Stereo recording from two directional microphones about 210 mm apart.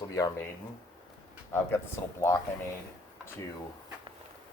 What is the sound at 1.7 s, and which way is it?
Speech, 10° left (ahead or behind).